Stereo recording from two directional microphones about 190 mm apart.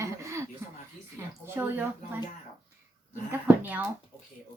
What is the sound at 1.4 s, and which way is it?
Speech, 10° right (ahead or behind).